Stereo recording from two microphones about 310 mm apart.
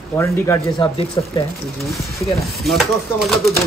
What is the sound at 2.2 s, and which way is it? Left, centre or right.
Speech, centre.